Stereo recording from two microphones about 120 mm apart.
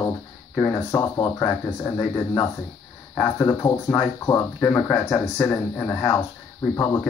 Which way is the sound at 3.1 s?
20° left (ahead or behind).